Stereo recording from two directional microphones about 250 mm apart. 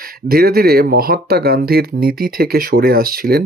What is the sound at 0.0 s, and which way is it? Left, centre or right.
Speech, right.